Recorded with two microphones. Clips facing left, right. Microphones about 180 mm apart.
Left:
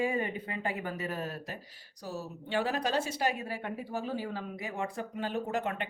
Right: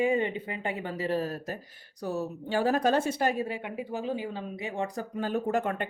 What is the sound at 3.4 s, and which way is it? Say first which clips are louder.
Speech: right 3 dB; 15° right (ahead or behind).